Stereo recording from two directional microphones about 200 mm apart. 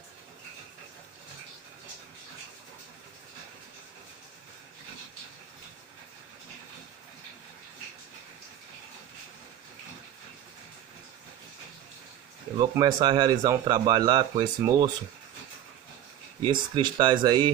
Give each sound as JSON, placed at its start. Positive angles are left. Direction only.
{"t": 12.5, "sound": "speech", "side_deg": -20}
{"t": 16.4, "sound": "speech", "side_deg": -25}